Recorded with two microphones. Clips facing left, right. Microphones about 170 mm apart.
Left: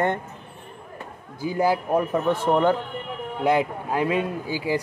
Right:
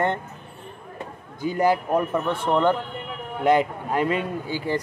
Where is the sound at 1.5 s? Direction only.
5° left (ahead or behind).